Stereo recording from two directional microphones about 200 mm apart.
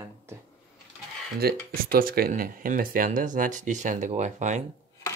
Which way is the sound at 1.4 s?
50° right (ahead or behind).